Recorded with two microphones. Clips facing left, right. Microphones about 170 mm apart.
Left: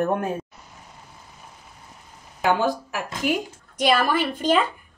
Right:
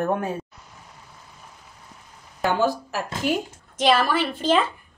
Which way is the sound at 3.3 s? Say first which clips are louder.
Left 1 dB; 10° left (ahead or behind).